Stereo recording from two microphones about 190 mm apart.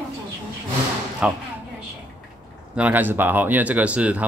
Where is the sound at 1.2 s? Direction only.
5° right (ahead or behind).